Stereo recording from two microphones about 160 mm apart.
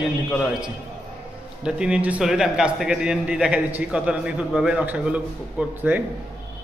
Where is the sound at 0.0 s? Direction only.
5° right (ahead or behind).